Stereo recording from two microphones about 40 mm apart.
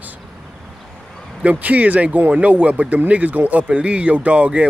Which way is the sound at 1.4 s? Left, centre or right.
Right.